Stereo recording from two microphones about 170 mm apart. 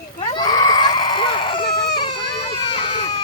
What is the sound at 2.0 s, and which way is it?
Baby cry, 35° left (ahead or behind).